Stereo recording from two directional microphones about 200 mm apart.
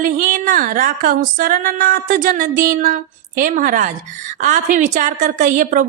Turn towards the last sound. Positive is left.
turn(degrees=-40)  # may be behind; listen again after turning